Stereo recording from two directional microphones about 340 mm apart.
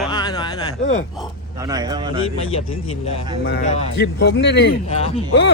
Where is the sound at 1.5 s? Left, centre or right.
Centre.